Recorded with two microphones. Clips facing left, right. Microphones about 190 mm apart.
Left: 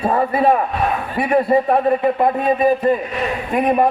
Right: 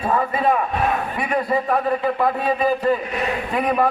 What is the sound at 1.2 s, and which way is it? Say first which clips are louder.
A man's voice: left 9 dB; 30° left (ahead or behind).